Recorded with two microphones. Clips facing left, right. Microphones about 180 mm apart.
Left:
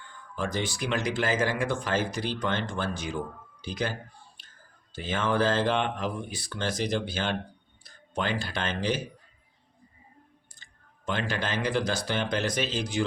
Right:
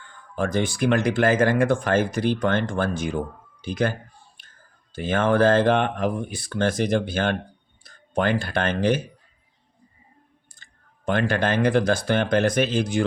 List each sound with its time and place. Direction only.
0.3 s speech: 55° right (ahead or behind)
4.4 s a sound: 55° right (ahead or behind)
4.9 s speech: 55° right (ahead or behind)
10.5 s speech: 55° right (ahead or behind)